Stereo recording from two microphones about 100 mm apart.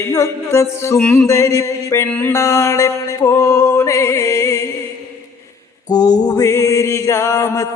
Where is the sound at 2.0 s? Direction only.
15° left (ahead or behind).